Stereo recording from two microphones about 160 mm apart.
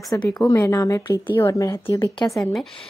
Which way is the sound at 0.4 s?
20° left (ahead or behind).